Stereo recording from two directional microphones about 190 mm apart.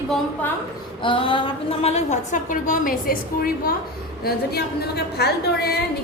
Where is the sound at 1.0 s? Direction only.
25° left (ahead or behind); by 5.7 s 60° left (ahead or behind).